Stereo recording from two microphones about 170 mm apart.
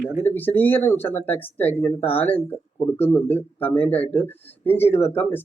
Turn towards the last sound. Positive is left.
turn(degrees=10)  # may be behind; listen again after turning